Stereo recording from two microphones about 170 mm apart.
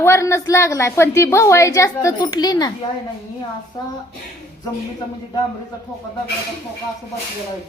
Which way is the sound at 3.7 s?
25° left (ahead or behind).